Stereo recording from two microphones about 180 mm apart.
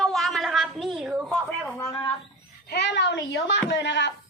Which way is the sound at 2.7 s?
70° left (ahead or behind).